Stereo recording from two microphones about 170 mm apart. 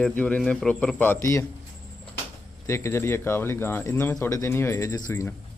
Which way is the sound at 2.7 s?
15° left (ahead or behind).